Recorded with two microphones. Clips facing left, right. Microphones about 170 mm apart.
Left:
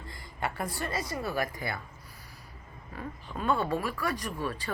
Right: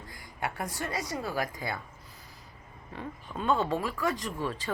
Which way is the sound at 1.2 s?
15° right (ahead or behind).